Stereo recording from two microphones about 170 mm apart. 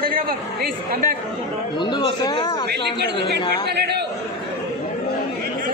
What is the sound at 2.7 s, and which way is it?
A woman's voice, 80° right.